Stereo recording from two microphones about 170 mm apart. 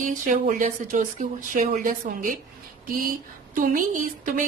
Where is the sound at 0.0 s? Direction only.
50° right (ahead or behind).